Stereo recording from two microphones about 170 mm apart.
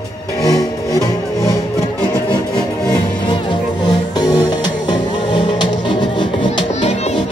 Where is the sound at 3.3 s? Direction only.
25° left (ahead or behind).